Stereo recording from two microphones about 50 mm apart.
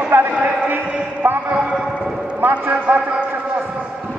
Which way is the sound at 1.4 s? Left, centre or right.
Right.